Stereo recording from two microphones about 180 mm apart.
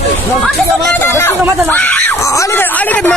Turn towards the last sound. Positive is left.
turn(degrees=10)  # may be behind; listen again after turning